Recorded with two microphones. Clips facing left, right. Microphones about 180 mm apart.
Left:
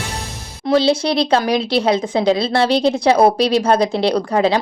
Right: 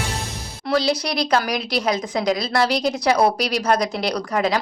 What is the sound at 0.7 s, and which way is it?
Speech, 25° left (ahead or behind).